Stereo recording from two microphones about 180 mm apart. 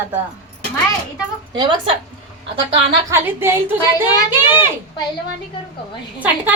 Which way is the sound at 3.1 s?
15° right (ahead or behind).